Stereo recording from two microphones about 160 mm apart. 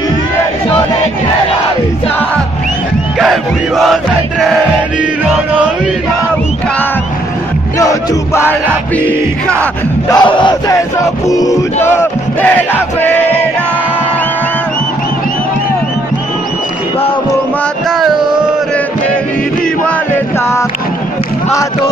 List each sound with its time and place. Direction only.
3.2 s music: centre (ahead or behind)
7.8 s music: 20° left (ahead or behind)
10.1 s music: 30° left (ahead or behind); by 13.2 s 10° left (ahead or behind)